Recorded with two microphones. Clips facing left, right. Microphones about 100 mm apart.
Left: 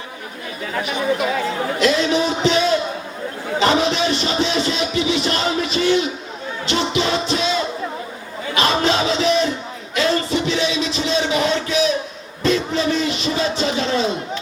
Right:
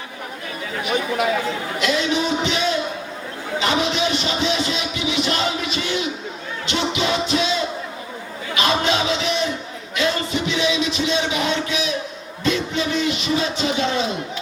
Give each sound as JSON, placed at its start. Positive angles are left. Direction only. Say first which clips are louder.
{"t": 1.8, "sound": "music", "louder": "left 3 dB", "side_deg": 35}
{"t": 3.6, "sound": "music", "louder": "left 4 dB", "side_deg": 35}
{"t": 8.5, "sound": "music", "louder": "left 2 dB", "side_deg": 40}